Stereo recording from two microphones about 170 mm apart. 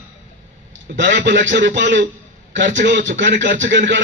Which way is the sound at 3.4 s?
90° right.